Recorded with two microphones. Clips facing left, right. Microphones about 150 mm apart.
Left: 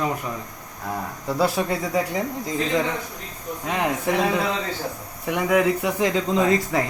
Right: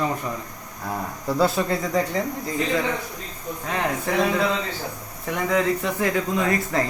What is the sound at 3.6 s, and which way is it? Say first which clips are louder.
Speech: left 2 dB; 15° left (ahead or behind).